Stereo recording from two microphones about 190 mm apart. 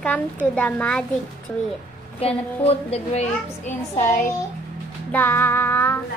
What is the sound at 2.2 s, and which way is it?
A woman's voice, 30° left (ahead or behind).